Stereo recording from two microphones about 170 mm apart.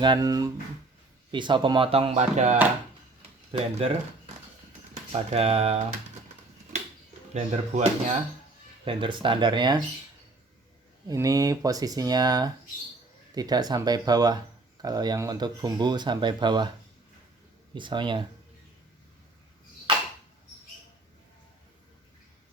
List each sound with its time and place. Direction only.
0.0 s speech: 25° right (ahead or behind)
5.1 s speech: 35° right (ahead or behind)
7.3 s speech: 45° right (ahead or behind)
8.8 s speech: 30° right (ahead or behind)
11.1 s speech: 20° right (ahead or behind)
17.7 s speech: 30° right (ahead or behind)